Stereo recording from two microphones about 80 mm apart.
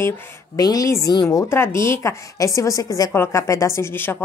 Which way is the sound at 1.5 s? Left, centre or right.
Left.